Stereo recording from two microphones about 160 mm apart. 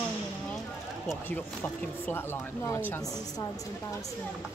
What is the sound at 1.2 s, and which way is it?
Speech, 10° left (ahead or behind).